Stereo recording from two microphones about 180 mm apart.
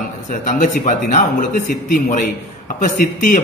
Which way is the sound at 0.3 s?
45° left (ahead or behind).